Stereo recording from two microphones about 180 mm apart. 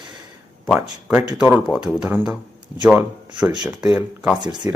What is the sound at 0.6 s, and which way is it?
Speech, centre (ahead or behind).